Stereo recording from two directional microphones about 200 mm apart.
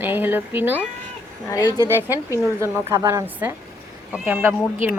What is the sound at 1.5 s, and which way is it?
Speech, 20° left (ahead or behind).